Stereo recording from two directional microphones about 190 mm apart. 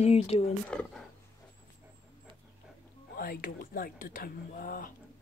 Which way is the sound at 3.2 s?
50° left (ahead or behind).